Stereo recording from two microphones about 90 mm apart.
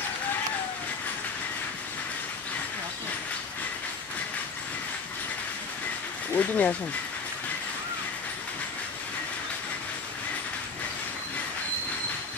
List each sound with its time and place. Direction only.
6.3 s speech: 20° left (ahead or behind)